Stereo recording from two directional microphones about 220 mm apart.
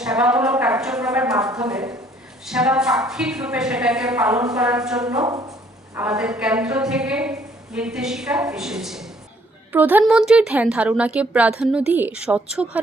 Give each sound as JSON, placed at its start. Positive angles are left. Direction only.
{"t": 0.0, "sound": "a woman's voice", "side_deg": -5}
{"t": 1.7, "sound": "speech", "side_deg": -15}
{"t": 2.4, "sound": "a woman's voice", "side_deg": -5}
{"t": 5.2, "sound": "speech", "side_deg": -15}
{"t": 5.9, "sound": "a woman's voice", "side_deg": -5}